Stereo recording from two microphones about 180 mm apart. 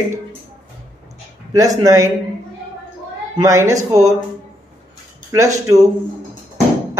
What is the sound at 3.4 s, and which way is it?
Speech, 20° right (ahead or behind).